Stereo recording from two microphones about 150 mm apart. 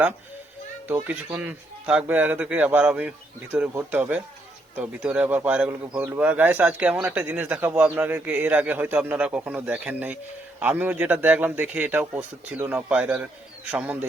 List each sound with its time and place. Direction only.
1.0 s speech: 10° right (ahead or behind)